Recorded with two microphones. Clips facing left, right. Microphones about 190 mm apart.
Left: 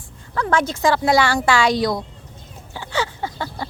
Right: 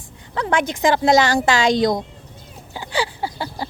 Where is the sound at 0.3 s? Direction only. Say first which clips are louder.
Even; 15° right (ahead or behind).